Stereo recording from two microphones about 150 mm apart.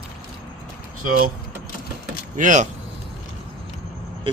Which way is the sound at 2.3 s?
55° right (ahead or behind).